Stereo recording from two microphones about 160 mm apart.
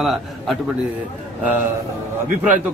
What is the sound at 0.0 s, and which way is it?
Speech, centre (ahead or behind).